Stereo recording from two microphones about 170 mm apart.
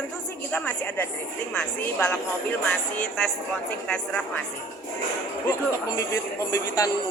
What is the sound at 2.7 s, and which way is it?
Music, 5° left (ahead or behind).